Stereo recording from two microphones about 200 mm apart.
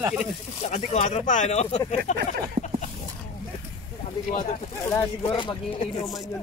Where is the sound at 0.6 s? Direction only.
35° left (ahead or behind).